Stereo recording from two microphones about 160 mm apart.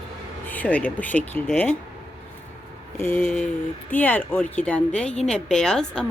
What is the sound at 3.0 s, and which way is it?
Speech, 10° left (ahead or behind).